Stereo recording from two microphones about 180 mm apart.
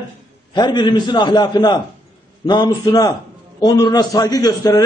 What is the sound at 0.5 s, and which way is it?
A man's voice, 25° left (ahead or behind).